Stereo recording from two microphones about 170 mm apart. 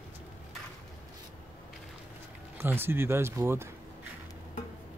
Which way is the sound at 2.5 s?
15° right (ahead or behind).